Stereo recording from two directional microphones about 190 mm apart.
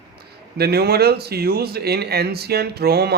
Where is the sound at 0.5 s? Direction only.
55° right (ahead or behind).